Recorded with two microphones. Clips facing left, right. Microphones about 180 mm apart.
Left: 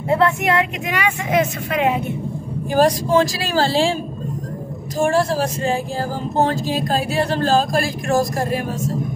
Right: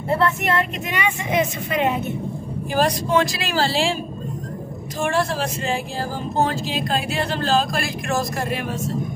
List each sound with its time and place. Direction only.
0.1 s speech: 15° left (ahead or behind)
2.7 s speech: 40° left (ahead or behind)
4.9 s speech: 40° left (ahead or behind)